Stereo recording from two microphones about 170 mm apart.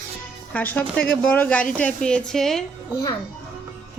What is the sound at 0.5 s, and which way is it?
A woman's voice, 10° left (ahead or behind).